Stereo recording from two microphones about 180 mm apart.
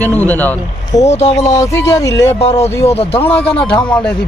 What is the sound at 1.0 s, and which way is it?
Speech, 40° left (ahead or behind).